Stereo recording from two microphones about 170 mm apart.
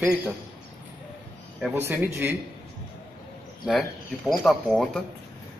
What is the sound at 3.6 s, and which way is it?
Speech, centre (ahead or behind).